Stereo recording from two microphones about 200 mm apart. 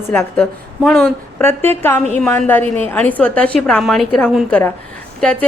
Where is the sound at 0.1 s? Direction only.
10° left (ahead or behind).